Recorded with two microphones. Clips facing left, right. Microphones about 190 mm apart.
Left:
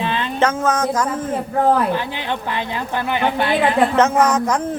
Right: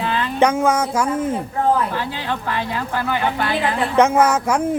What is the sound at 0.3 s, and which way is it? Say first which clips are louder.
Speech: right 2 dB; 10° right (ahead or behind).